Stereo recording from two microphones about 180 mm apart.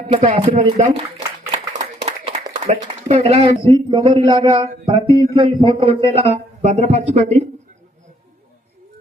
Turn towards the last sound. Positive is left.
turn(degrees=-35)  # may be behind; listen again after turning